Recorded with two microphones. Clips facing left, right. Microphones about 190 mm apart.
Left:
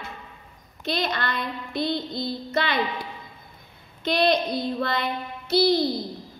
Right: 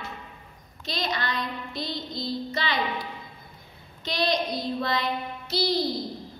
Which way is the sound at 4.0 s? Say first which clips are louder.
Left 5 dB; 55° left (ahead or behind).